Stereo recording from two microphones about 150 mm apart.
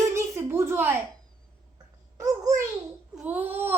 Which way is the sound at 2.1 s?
20° right (ahead or behind).